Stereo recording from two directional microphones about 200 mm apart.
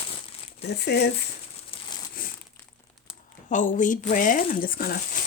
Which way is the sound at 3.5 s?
40° left (ahead or behind).